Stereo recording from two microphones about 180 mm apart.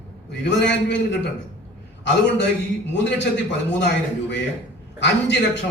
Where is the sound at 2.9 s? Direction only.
80° left.